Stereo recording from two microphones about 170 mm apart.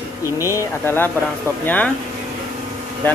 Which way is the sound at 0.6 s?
15° left (ahead or behind).